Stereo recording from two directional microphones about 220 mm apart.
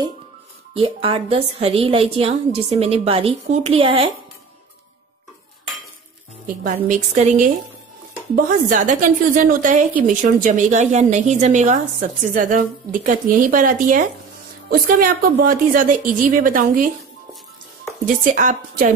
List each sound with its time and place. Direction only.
0.8 s a woman's voice: 25° right (ahead or behind)
6.4 s a woman's voice: 35° right (ahead or behind)
8.6 s a woman's voice: 35° right (ahead or behind)
18.0 s a woman's voice: 35° right (ahead or behind)